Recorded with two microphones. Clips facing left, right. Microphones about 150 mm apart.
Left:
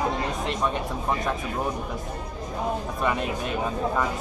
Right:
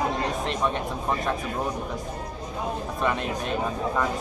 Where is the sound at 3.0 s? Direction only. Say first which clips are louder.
Even; 5° left (ahead or behind).